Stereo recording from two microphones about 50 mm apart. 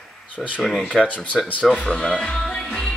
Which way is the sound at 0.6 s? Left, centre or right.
Centre.